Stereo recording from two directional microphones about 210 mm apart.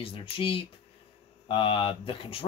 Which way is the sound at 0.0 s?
25° left (ahead or behind).